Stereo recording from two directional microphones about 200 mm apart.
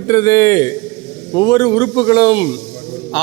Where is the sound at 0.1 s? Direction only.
15° left (ahead or behind).